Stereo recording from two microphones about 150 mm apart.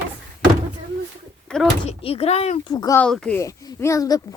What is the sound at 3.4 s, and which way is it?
Speech, 20° left (ahead or behind).